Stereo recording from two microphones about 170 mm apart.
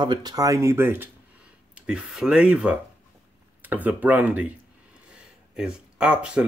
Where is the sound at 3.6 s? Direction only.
10° right (ahead or behind).